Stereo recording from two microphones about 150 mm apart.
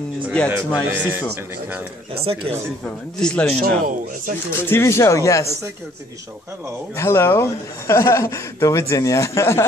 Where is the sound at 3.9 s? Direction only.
65° right (ahead or behind).